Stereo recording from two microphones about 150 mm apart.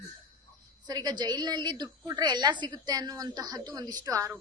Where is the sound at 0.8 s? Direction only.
25° right (ahead or behind).